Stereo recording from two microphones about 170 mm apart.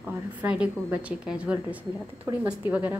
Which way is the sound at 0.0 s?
10° right (ahead or behind).